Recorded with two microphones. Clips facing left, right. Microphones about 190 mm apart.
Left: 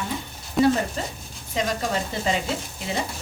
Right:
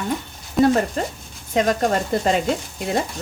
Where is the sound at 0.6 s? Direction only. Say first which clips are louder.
Right 3 dB; centre (ahead or behind).